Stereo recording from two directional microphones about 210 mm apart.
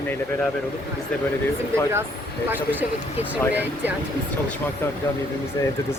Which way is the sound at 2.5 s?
10° right (ahead or behind).